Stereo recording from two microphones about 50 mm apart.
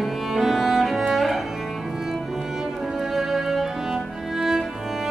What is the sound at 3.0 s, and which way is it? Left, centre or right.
Music, centre.